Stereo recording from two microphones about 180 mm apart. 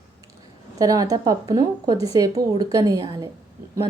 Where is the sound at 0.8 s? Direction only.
20° right (ahead or behind).